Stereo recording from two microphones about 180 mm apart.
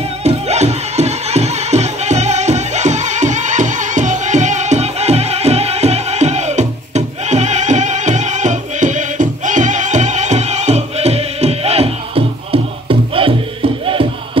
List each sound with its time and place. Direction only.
0.2 s music: 35° right (ahead or behind)